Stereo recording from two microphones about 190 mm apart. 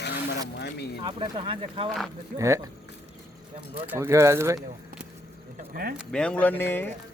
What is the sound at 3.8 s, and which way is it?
Speech, 15° right (ahead or behind).